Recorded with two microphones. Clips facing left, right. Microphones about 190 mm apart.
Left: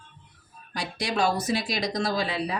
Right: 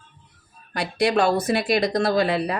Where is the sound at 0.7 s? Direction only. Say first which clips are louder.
Right 9 dB; 60° right (ahead or behind).